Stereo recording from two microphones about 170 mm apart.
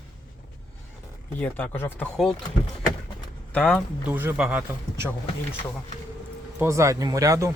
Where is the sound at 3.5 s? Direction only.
5° left (ahead or behind).